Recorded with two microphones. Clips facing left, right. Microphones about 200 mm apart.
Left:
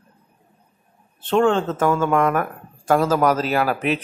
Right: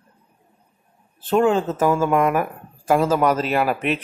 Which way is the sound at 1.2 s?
5° right (ahead or behind).